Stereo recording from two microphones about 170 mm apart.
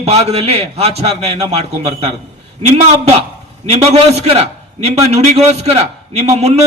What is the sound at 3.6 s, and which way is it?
A man's voice, 40° right (ahead or behind).